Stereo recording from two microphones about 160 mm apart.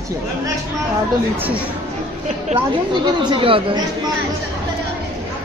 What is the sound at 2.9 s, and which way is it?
Speech, 30° right (ahead or behind).